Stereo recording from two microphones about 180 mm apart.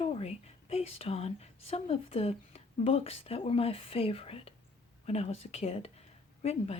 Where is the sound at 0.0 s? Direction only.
35° left (ahead or behind).